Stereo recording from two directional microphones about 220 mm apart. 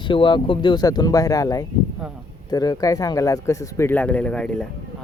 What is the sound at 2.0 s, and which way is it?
Speech, centre (ahead or behind).